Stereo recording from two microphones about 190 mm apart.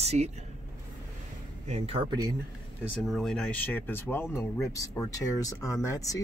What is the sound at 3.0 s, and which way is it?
Speech, centre (ahead or behind).